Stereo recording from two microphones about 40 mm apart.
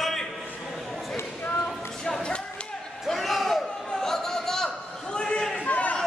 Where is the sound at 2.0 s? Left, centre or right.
Left.